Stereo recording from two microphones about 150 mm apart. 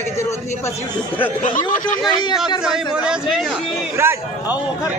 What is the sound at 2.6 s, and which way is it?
Speech, 5° right (ahead or behind).